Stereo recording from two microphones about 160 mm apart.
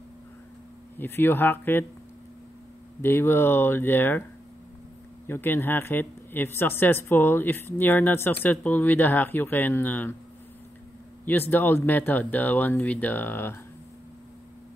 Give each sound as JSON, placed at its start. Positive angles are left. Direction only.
{"t": 0.9, "sound": "speech", "side_deg": 15}
{"t": 3.0, "sound": "speech", "side_deg": 15}
{"t": 5.2, "sound": "speech", "side_deg": 15}
{"t": 11.2, "sound": "speech", "side_deg": 10}